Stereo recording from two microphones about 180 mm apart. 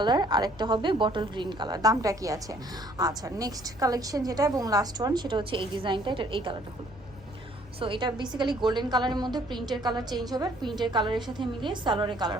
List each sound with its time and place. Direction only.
0.0 s a woman's voice: 25° right (ahead or behind)
7.8 s a woman's voice: 25° right (ahead or behind)